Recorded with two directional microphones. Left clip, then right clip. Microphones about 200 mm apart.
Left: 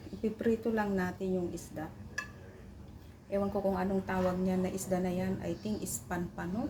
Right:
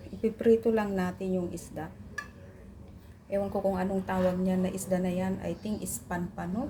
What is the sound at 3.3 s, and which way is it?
A woman's voice, 15° right (ahead or behind).